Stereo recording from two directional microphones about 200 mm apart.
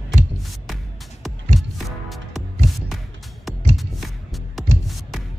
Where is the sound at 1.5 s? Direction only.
Centre (ahead or behind).